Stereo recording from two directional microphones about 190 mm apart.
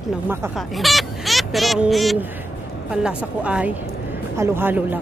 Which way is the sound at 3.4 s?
5° right (ahead or behind).